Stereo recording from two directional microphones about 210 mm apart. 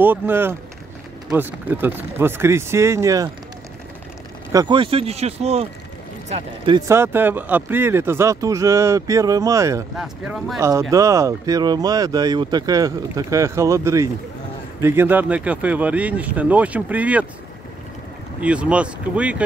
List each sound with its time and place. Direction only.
0.0 s speech: 10° right (ahead or behind)
4.5 s speech: 20° right (ahead or behind)
6.9 s speech: 10° right (ahead or behind)
9.9 s speech: centre (ahead or behind)
10.6 s speech: 15° right (ahead or behind)
18.4 s speech: 5° right (ahead or behind)